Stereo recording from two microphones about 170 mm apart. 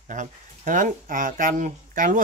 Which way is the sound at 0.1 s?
50° right (ahead or behind).